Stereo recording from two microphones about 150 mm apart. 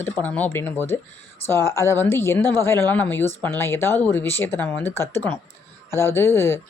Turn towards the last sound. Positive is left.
turn(degrees=15)  # may be behind; listen again after turning